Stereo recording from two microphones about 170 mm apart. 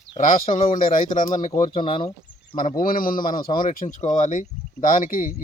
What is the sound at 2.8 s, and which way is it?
Speech, 55° left (ahead or behind).